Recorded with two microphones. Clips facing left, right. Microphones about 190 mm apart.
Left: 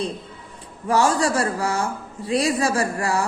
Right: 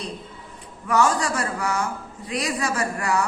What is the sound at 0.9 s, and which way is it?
A woman's voice, 30° left (ahead or behind).